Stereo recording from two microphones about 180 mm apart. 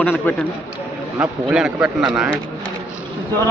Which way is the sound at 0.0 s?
10° left (ahead or behind).